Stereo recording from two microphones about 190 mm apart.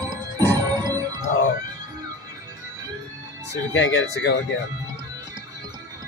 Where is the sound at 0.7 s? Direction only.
20° right (ahead or behind).